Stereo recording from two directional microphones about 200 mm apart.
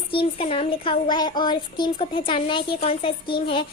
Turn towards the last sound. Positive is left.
turn(degrees=25)  # may be behind; listen again after turning